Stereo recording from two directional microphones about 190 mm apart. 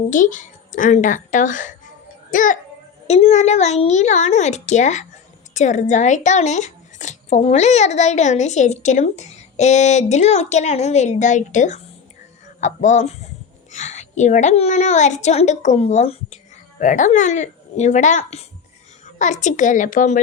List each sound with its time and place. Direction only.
0.1 s a woman's voice: 40° left (ahead or behind)